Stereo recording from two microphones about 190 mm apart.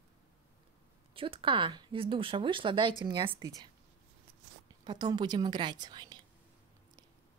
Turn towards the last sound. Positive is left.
turn(degrees=-25)  # may be behind; listen again after turning